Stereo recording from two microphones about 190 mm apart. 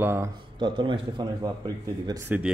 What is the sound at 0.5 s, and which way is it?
A man's voice, 25° right (ahead or behind).